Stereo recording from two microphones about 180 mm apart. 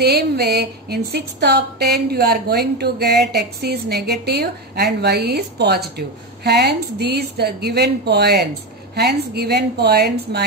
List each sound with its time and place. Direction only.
0.0 s a woman's voice: 65° right (ahead or behind)